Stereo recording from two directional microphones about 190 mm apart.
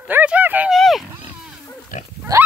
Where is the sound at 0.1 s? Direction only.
10° right (ahead or behind).